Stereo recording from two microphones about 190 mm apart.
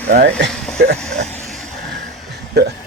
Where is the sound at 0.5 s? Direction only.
5° left (ahead or behind).